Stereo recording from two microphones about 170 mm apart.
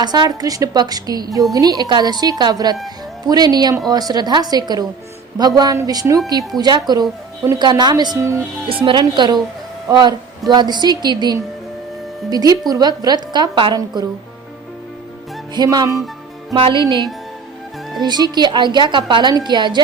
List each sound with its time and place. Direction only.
0.0 s a woman's voice: 25° right (ahead or behind)
8.7 s a woman's voice: 30° right (ahead or behind)
15.5 s a woman's voice: 20° right (ahead or behind)
16.6 s speech: 30° right (ahead or behind)
18.0 s a woman's voice: 25° right (ahead or behind)